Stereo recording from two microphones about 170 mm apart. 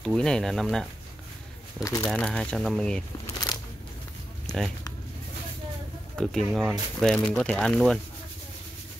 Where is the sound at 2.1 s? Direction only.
5° left (ahead or behind).